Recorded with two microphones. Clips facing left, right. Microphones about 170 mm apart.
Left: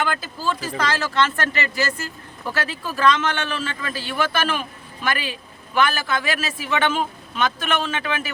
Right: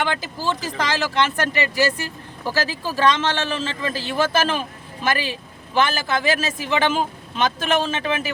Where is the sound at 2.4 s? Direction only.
30° right (ahead or behind).